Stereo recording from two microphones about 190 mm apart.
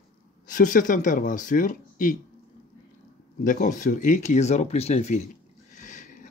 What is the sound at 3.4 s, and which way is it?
Speech, 40° left (ahead or behind).